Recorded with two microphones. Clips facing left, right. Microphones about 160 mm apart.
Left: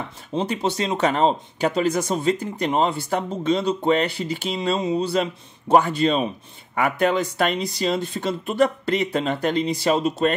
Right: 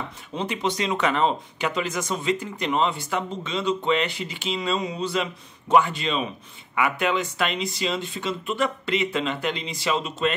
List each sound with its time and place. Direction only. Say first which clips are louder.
0.4 s speech: left 3 dB; 35° left (ahead or behind)